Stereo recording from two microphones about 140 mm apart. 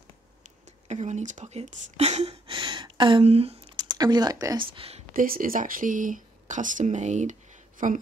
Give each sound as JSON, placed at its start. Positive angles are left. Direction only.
{"t": 0.8, "sound": "speech", "side_deg": -55}
{"t": 2.5, "sound": "speech", "side_deg": -35}
{"t": 3.7, "sound": "speech", "side_deg": -30}
{"t": 4.6, "sound": "speech", "side_deg": -40}
{"t": 5.1, "sound": "speech", "side_deg": -85}